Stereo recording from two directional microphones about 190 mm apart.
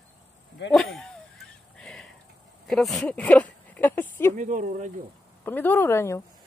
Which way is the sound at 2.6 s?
Centre (ahead or behind).